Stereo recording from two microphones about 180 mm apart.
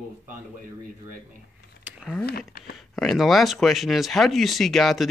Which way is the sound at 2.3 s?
60° left (ahead or behind).